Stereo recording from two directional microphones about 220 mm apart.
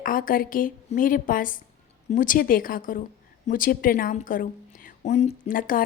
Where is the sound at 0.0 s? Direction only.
40° left (ahead or behind).